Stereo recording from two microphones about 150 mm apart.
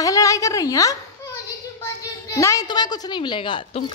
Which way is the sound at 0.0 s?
20° left (ahead or behind).